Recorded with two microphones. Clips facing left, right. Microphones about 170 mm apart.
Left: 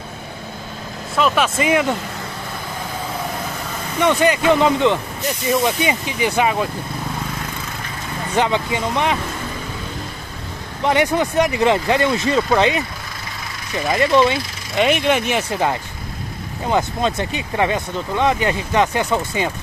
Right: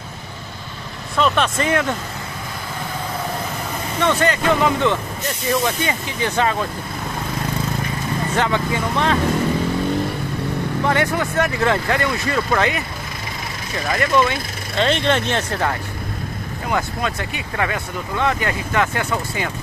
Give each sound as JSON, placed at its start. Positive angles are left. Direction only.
{"t": 1.1, "sound": "speech", "side_deg": 5}
{"t": 4.0, "sound": "speech", "side_deg": 15}
{"t": 8.4, "sound": "speech", "side_deg": 20}
{"t": 10.8, "sound": "speech", "side_deg": 20}
{"t": 13.8, "sound": "speech", "side_deg": 20}
{"t": 14.9, "sound": "speech", "side_deg": 10}
{"t": 16.6, "sound": "speech", "side_deg": 25}